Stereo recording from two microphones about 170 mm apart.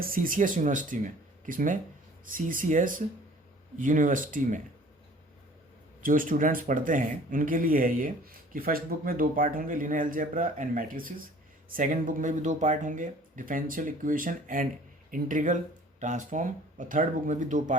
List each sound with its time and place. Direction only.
0.0 s speech: 55° right (ahead or behind)
6.0 s speech: 55° right (ahead or behind)